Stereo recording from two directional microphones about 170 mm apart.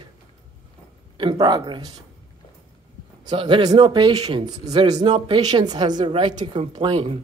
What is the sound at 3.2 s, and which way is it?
A woman's voice, 30° right (ahead or behind).